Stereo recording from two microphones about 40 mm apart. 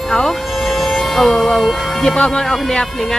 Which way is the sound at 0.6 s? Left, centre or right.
Centre.